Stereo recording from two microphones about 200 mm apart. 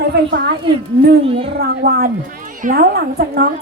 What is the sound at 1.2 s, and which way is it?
Speech, 30° right (ahead or behind).